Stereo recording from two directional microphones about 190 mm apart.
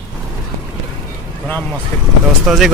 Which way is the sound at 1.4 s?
10° left (ahead or behind).